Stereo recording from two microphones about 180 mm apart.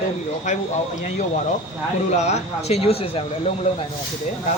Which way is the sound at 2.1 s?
40° left (ahead or behind).